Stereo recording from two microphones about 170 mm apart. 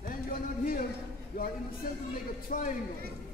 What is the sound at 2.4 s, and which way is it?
Speech, 50° left (ahead or behind).